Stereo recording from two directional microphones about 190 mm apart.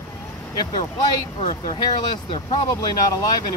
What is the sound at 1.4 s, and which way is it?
Speech, 25° left (ahead or behind).